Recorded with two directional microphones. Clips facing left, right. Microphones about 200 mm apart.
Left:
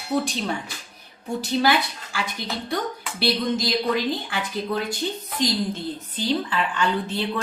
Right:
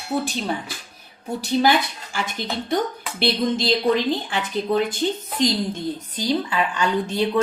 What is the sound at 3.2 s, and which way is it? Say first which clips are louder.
A woman's voice: right 2 dB; 25° right (ahead or behind).